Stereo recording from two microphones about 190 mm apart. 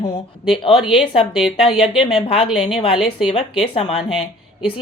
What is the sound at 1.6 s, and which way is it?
Speech, 25° left (ahead or behind).